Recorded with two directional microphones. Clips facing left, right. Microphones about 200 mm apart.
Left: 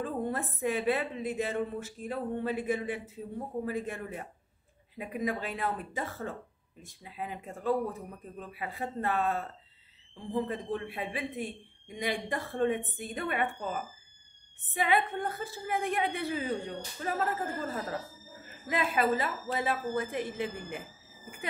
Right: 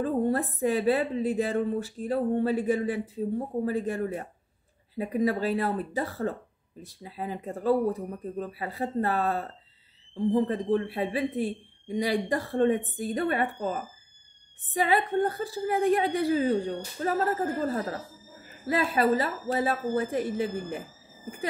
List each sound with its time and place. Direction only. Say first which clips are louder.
0.0 s speech: right 7 dB; 35° right (ahead or behind)